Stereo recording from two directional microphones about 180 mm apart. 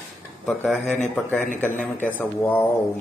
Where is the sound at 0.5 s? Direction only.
5° left (ahead or behind).